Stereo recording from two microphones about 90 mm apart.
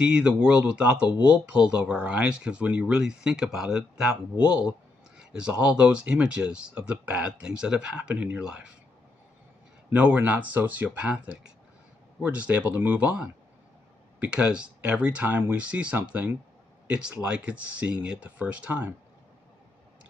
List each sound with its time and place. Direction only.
0.0 s speech: 10° right (ahead or behind)
9.9 s speech: 15° right (ahead or behind)